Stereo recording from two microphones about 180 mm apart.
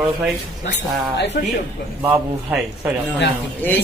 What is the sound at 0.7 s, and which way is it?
Speech, 70° left (ahead or behind).